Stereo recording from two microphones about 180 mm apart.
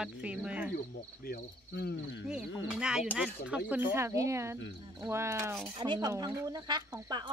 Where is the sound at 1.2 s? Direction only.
60° left (ahead or behind).